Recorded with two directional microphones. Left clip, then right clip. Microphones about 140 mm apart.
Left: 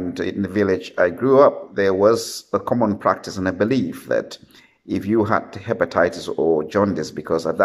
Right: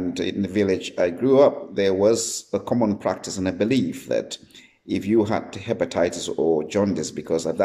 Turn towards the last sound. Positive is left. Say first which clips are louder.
# left 3 dB
turn(degrees=-25)  # may be behind; listen again after turning